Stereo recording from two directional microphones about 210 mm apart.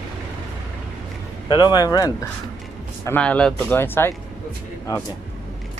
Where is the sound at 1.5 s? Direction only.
20° left (ahead or behind).